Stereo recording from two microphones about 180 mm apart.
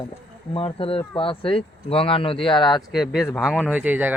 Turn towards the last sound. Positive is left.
turn(degrees=-10)  # may be behind; listen again after turning